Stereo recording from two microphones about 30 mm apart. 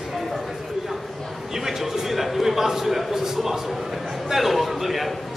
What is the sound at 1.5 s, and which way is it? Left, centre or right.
A man's voice, centre.